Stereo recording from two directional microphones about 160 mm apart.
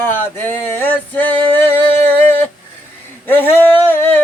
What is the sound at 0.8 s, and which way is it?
Male singing, 10° left (ahead or behind).